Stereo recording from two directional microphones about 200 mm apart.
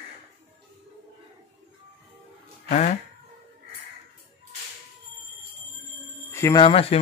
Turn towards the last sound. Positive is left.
turn(degrees=30)  # may be behind; listen again after turning